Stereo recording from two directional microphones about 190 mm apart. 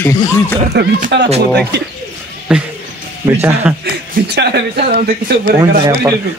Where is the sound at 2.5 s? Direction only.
5° right (ahead or behind).